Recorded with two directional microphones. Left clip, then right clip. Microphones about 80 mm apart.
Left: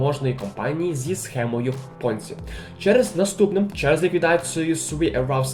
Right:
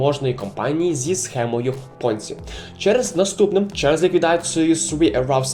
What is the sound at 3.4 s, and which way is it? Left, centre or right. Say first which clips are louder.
Speech: right 3 dB; right.